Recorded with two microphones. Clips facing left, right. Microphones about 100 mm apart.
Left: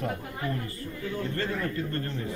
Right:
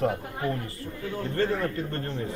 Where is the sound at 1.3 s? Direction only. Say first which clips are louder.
Right 10 dB; 25° right (ahead or behind).